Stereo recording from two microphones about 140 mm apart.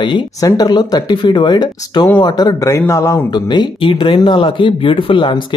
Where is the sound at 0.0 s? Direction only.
30° left (ahead or behind).